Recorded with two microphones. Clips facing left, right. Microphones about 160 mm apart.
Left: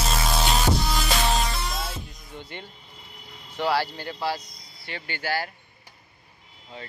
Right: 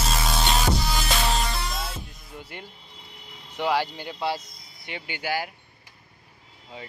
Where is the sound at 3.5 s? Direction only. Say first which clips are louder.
Even; 15° right (ahead or behind).